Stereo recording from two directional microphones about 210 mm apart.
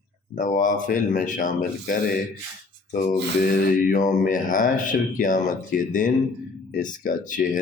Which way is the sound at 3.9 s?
40° left (ahead or behind).